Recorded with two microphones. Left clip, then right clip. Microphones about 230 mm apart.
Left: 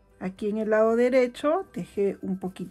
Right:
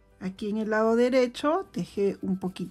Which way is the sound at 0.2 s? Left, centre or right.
Centre.